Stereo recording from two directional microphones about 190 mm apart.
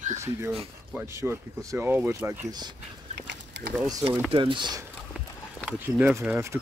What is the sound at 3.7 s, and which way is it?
Speech, 20° right (ahead or behind).